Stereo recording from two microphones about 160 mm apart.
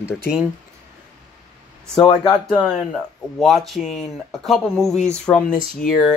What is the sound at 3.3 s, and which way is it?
Speech, centre (ahead or behind).